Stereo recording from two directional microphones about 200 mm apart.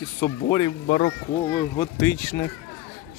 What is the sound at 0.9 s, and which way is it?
Speech, 35° left (ahead or behind).